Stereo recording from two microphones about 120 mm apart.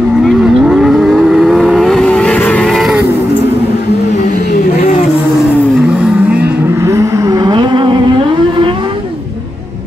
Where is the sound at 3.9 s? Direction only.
80° left.